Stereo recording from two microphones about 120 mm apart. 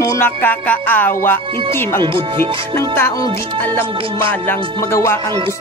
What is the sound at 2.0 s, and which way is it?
Speech, 45° right (ahead or behind).